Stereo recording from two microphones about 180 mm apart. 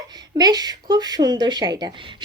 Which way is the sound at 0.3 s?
20° right (ahead or behind).